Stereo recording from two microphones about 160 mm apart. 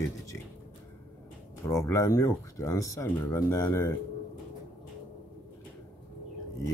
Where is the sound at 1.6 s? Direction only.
20° left (ahead or behind).